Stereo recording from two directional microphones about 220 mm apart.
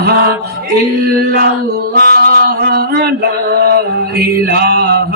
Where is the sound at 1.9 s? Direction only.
45° right (ahead or behind).